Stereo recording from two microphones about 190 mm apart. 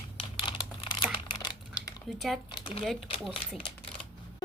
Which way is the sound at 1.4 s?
20° left (ahead or behind).